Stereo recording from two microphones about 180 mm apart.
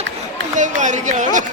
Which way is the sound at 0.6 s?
45° right (ahead or behind).